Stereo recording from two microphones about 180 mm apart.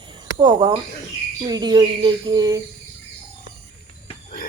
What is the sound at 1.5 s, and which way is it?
Speech, 20° right (ahead or behind).